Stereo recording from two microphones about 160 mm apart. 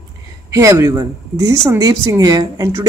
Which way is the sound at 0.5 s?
20° right (ahead or behind).